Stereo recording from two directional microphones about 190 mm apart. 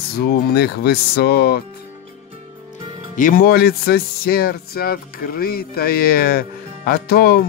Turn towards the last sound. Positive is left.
turn(degrees=55)  # may be behind; listen again after turning